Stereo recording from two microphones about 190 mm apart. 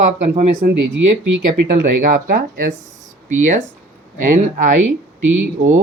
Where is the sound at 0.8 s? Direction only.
85° right.